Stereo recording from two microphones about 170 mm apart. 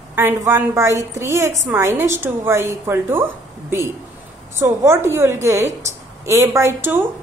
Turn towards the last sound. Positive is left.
turn(degrees=-15)  # may be behind; listen again after turning